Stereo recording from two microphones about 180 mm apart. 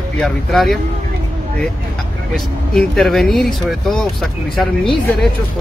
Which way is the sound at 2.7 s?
Centre (ahead or behind).